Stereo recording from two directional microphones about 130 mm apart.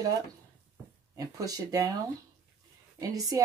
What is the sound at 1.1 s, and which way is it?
Speech, 25° right (ahead or behind).